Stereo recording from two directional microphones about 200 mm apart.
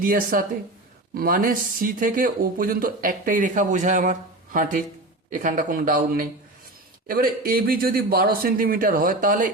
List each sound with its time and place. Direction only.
0.0 s speech: 45° right (ahead or behind)